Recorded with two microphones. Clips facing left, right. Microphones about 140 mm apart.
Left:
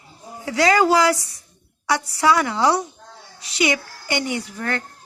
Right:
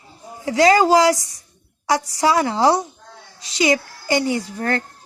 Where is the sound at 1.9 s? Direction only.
30° right (ahead or behind).